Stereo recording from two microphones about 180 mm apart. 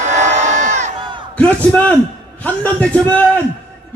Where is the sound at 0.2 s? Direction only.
40° right (ahead or behind).